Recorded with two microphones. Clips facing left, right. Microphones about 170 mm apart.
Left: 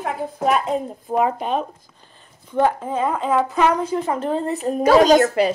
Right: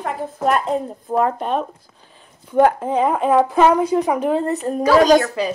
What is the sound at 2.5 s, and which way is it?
Speech, 15° right (ahead or behind).